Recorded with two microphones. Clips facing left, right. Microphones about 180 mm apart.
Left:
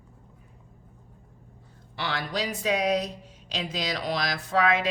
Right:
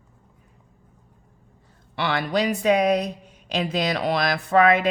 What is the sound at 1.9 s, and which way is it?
A woman's voice, 60° right (ahead or behind).